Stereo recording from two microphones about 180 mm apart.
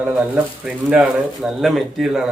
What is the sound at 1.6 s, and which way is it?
Speech, centre (ahead or behind).